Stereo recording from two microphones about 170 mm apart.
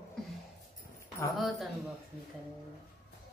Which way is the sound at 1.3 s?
Centre (ahead or behind).